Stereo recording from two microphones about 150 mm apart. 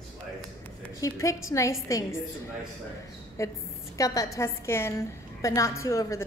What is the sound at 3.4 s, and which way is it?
A woman's voice, 20° left (ahead or behind).